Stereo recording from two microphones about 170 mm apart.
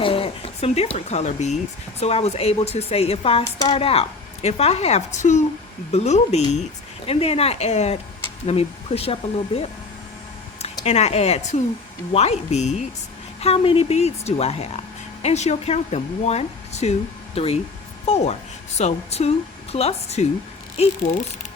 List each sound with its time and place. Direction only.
0.0 s speech: 30° left (ahead or behind)
3.4 s speech: 20° left (ahead or behind)
3.8 s speech: 35° left (ahead or behind)
10.8 s speech: 40° left (ahead or behind)